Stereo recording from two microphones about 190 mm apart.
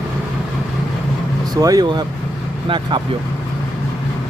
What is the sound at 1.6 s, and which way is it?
Speech, 20° right (ahead or behind).